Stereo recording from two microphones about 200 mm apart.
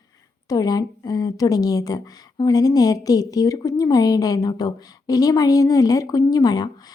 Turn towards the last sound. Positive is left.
turn(degrees=20)  # may be behind; listen again after turning